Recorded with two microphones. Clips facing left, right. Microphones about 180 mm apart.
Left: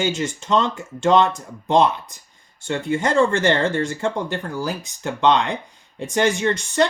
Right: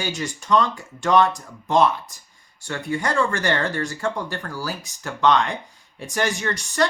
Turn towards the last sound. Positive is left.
turn(degrees=25)  # may be behind; listen again after turning